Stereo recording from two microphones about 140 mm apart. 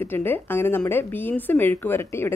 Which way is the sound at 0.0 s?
15° left (ahead or behind).